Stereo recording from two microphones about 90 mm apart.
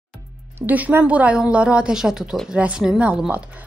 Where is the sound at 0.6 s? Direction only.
20° right (ahead or behind).